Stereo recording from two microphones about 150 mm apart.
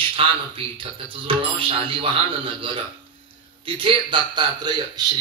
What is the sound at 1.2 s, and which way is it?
Speech, 35° right (ahead or behind).